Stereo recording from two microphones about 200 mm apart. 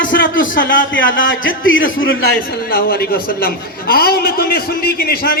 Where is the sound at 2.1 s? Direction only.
50° left (ahead or behind).